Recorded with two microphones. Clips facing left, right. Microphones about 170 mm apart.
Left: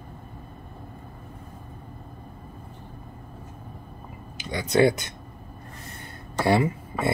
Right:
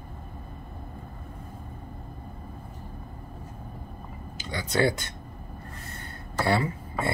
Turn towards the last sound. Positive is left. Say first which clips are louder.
# left 4 dB
turn(degrees=15)  # may be behind; listen again after turning